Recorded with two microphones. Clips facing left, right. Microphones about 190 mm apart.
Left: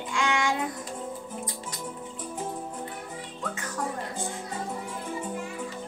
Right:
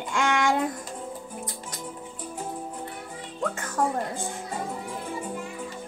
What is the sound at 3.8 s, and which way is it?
Speech, 50° right (ahead or behind).